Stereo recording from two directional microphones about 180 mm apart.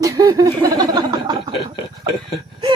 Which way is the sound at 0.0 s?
20° right (ahead or behind).